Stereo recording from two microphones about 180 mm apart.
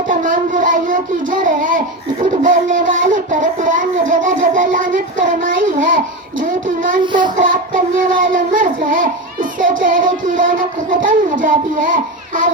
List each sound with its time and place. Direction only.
0.1 s child singing: 45° right (ahead or behind)
2.2 s speech: 45° right (ahead or behind)
7.0 s a sound: 25° right (ahead or behind)
7.3 s speech: 50° right (ahead or behind)